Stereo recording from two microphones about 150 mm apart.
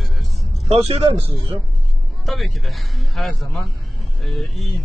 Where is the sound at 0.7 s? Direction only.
40° right (ahead or behind).